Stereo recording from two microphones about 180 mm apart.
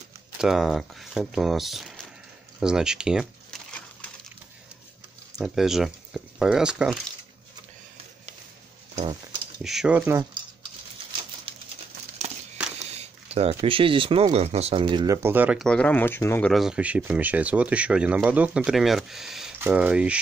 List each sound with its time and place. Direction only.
0.4 s speech: centre (ahead or behind)
5.4 s speech: centre (ahead or behind)
9.6 s speech: 5° right (ahead or behind)
12.2 s a sound: 40° right (ahead or behind)
13.6 s speech: 30° right (ahead or behind)
15.2 s speech: 10° right (ahead or behind)
15.6 s speech: 5° left (ahead or behind)